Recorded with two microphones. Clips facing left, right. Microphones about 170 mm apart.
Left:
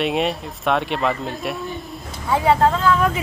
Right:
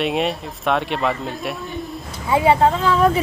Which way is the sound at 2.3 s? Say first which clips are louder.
Right 1 dB; 20° right (ahead or behind).